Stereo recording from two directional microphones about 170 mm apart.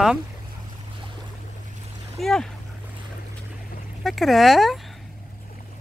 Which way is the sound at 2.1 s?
Centre (ahead or behind).